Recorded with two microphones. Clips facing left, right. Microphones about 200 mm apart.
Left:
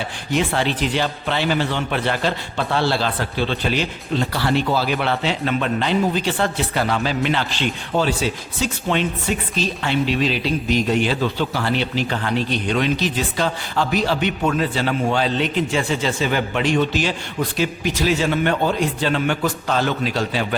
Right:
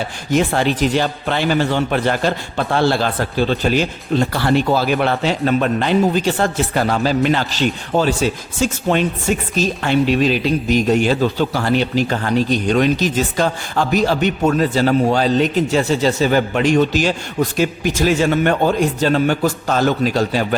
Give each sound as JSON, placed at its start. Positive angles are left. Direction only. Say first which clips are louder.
{"t": 0.3, "sound": "a man's voice", "louder": "right 4 dB", "side_deg": -45}